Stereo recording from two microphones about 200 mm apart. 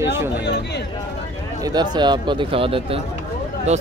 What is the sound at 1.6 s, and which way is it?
Speech, 20° right (ahead or behind).